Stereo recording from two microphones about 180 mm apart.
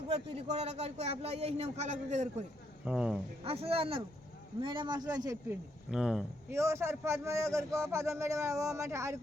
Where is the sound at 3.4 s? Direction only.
30° right (ahead or behind).